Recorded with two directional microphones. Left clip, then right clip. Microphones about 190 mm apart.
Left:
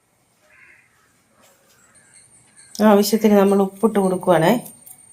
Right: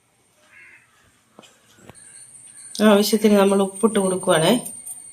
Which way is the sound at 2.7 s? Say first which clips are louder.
Left 1 dB; 45° left (ahead or behind).